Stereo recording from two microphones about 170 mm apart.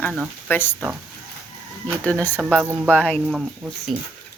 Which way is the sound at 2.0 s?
10° left (ahead or behind).